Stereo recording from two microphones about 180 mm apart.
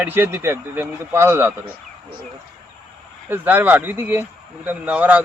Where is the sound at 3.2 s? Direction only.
10° right (ahead or behind).